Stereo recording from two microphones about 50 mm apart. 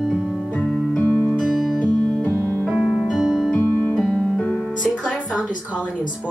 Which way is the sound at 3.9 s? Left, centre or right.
Centre.